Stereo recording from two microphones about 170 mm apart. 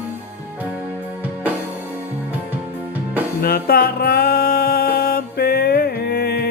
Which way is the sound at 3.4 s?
65° left (ahead or behind).